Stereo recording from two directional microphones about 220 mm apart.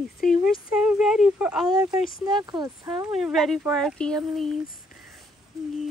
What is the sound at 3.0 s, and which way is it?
Speech, centre (ahead or behind).